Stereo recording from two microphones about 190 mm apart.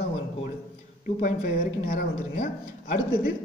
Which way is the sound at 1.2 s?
45° left (ahead or behind).